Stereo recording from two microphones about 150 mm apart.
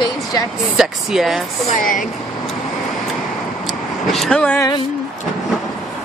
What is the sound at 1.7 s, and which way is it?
Speech, 65° left (ahead or behind).